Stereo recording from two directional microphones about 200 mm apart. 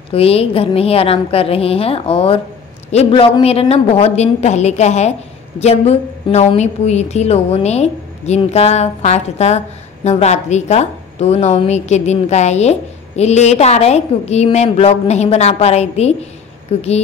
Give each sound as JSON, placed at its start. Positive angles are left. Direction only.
{"t": 0.1, "sound": "a woman's voice", "side_deg": 30}